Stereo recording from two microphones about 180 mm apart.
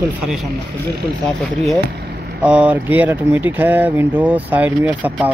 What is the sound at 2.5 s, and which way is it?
Speech, 10° right (ahead or behind).